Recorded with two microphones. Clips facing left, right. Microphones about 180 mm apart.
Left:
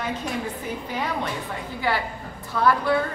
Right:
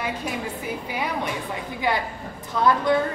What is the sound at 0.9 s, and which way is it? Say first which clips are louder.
A man's voice: even; 10° right (ahead or behind).